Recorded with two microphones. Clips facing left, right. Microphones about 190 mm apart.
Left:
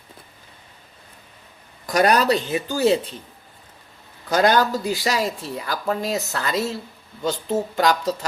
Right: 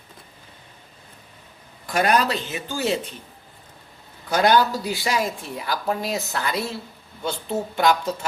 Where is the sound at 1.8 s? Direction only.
40° left (ahead or behind).